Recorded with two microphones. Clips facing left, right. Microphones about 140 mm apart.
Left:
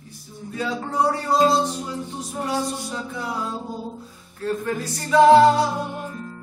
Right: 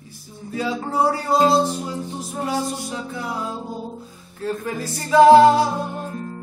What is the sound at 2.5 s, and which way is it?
Music, 10° right (ahead or behind).